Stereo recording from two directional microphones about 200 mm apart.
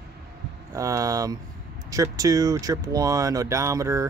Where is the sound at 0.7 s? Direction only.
15° right (ahead or behind).